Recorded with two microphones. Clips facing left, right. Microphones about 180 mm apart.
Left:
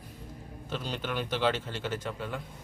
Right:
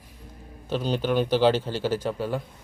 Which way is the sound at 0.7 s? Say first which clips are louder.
Right 10 dB; 30° right (ahead or behind).